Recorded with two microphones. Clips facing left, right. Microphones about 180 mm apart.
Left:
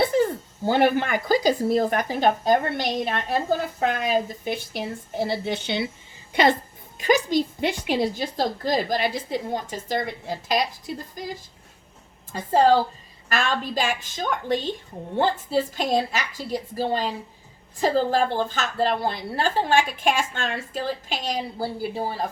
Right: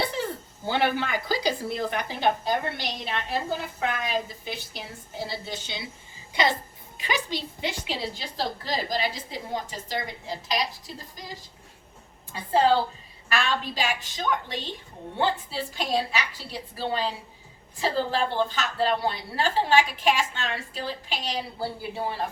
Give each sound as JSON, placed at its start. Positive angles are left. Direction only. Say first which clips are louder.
{"t": 0.0, "sound": "speech", "louder": "left 8 dB", "side_deg": 45}
{"t": 12.3, "sound": "speech", "louder": "left 3 dB", "side_deg": 45}